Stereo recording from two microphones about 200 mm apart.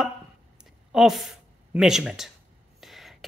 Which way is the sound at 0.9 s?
Centre (ahead or behind).